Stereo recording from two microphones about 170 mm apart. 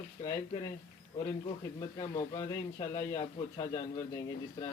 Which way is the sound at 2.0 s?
25° left (ahead or behind).